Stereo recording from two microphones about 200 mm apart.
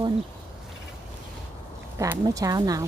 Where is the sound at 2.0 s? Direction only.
15° right (ahead or behind).